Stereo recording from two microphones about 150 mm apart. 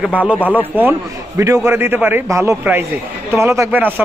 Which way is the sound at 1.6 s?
15° right (ahead or behind).